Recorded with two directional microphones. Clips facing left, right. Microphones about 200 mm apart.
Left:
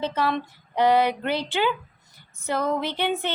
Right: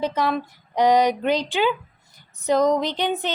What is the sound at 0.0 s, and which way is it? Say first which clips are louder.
Speech: right 2 dB; 10° right (ahead or behind).